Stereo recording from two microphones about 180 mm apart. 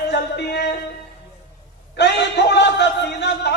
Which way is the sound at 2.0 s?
70° left (ahead or behind).